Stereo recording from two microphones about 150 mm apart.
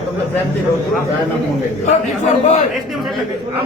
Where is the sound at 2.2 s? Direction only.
55° left (ahead or behind).